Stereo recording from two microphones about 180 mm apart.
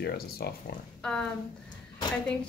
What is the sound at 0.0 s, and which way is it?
Speech, 60° left (ahead or behind).